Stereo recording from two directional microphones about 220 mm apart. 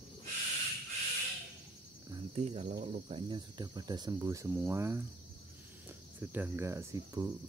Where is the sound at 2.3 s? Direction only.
30° right (ahead or behind); by 5.0 s 10° right (ahead or behind).